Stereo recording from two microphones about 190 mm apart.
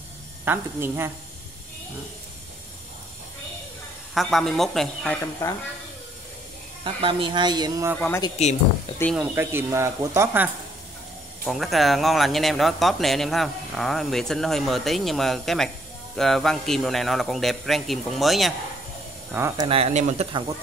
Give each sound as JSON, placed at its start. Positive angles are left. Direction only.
{"t": 0.5, "sound": "speech", "side_deg": -10}
{"t": 4.1, "sound": "speech", "side_deg": 0}
{"t": 6.8, "sound": "speech", "side_deg": -25}
{"t": 8.4, "sound": "speech", "side_deg": 35}
{"t": 9.1, "sound": "speech", "side_deg": -10}
{"t": 11.4, "sound": "speech", "side_deg": 0}
{"t": 19.3, "sound": "speech", "side_deg": -15}
{"t": 19.8, "sound": "speech", "side_deg": -35}